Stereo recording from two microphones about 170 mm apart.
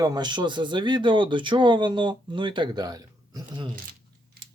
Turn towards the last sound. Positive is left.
turn(degrees=-25)  # may be behind; listen again after turning